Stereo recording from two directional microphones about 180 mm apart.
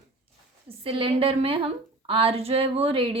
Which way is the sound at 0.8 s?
30° right (ahead or behind).